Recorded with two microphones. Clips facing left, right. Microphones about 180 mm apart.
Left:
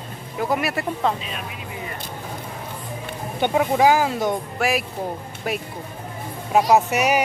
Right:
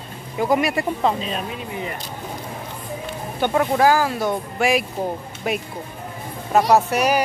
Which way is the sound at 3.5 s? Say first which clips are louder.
Even; 10° left (ahead or behind).